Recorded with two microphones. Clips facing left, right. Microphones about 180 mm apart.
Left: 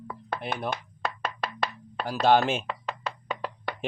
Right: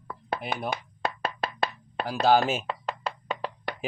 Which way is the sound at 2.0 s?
5° right (ahead or behind).